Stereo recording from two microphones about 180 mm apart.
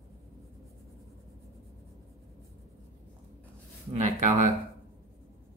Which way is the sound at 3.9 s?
40° right (ahead or behind).